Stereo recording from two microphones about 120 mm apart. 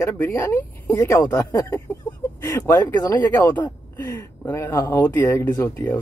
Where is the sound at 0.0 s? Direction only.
15° left (ahead or behind).